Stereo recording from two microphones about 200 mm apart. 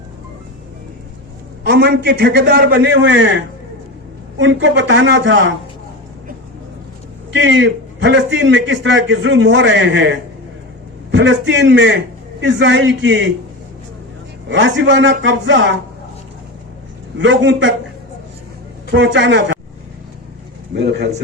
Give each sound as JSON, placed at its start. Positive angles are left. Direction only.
{"t": 1.6, "sound": "a man's voice", "side_deg": -55}
{"t": 7.3, "sound": "a man's voice", "side_deg": -65}
{"t": 14.5, "sound": "a man's voice", "side_deg": -65}
{"t": 17.2, "sound": "a man's voice", "side_deg": -65}
{"t": 18.9, "sound": "a man's voice", "side_deg": -65}
{"t": 20.7, "sound": "a man's voice", "side_deg": -55}